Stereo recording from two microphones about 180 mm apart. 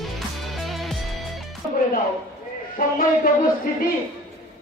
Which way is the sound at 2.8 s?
50° left (ahead or behind).